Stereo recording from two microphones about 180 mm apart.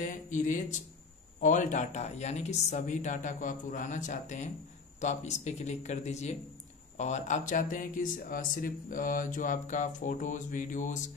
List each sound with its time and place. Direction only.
0.1 s speech: 45° left (ahead or behind)